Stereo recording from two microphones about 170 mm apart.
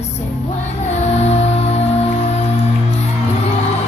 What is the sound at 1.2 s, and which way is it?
Music, 40° left (ahead or behind).